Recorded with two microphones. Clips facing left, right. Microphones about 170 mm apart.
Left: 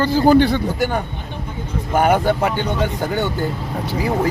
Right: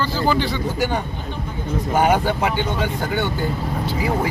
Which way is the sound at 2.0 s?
50° left (ahead or behind).